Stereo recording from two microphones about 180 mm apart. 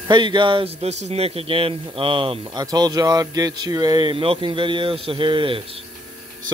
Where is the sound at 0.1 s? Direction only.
25° right (ahead or behind).